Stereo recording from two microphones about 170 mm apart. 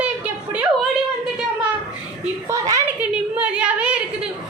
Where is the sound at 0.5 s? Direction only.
5° right (ahead or behind).